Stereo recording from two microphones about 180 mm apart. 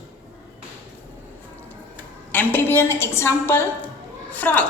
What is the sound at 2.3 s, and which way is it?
A woman's voice, 10° left (ahead or behind).